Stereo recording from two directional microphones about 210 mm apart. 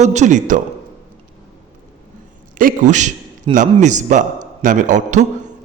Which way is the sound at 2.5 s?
40° right (ahead or behind).